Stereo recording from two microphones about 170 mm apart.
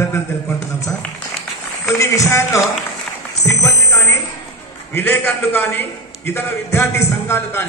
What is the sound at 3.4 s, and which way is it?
Music, 15° left (ahead or behind).